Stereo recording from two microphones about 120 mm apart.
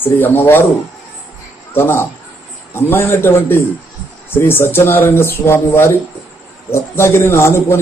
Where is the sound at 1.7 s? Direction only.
20° left (ahead or behind).